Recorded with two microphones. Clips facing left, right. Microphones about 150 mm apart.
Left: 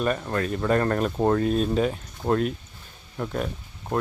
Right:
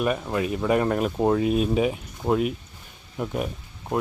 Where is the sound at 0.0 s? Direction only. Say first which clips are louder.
Right 1 dB; 5° right (ahead or behind).